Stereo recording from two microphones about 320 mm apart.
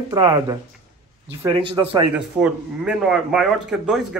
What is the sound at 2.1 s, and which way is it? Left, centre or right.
Speech, centre.